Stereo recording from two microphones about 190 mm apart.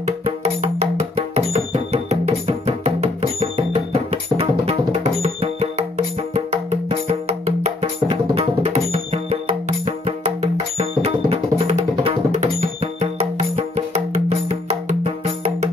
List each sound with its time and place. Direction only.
0.4 s music: 35° right (ahead or behind)